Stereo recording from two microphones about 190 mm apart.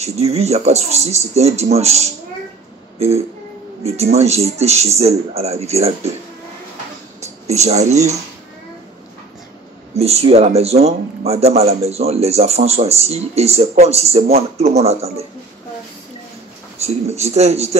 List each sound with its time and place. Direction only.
0.0 s a man's voice: 35° right (ahead or behind)
3.0 s music: 35° right (ahead or behind)
3.8 s a man's voice: 35° right (ahead or behind)
7.4 s a man's voice: 35° right (ahead or behind)
9.9 s a man's voice: 35° right (ahead or behind)
16.8 s a man's voice: 35° right (ahead or behind)